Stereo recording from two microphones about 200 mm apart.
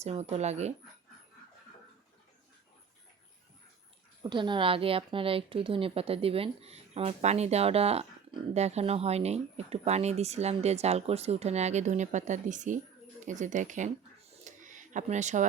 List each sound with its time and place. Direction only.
0.0 s a woman's voice: 30° right (ahead or behind)
4.2 s a woman's voice: 25° right (ahead or behind); by 13.9 s 40° right (ahead or behind)
14.4 s a sound: 40° right (ahead or behind)